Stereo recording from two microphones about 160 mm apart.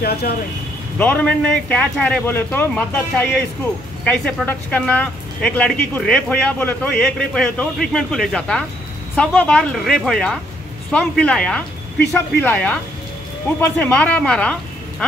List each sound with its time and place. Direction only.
0.0 s speech: 75° left (ahead or behind)
0.9 s a woman's voice: 10° left (ahead or behind)